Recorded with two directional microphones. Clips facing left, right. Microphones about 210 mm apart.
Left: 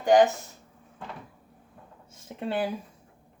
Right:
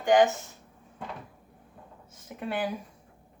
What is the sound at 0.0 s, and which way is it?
Speech, 40° left (ahead or behind).